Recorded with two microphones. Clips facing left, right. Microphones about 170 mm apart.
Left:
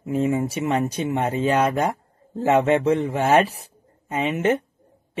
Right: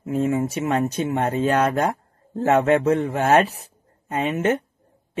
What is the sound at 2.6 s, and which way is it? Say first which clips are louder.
Speech: right 1 dB; 50° right (ahead or behind).